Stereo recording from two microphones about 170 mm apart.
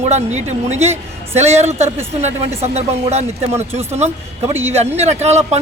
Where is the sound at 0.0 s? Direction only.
40° right (ahead or behind).